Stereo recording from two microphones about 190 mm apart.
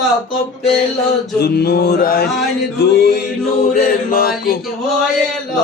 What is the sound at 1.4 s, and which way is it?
Mantra, 55° left (ahead or behind).